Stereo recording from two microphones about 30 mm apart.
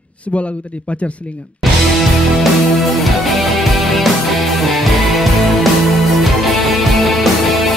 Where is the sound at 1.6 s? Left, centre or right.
Centre.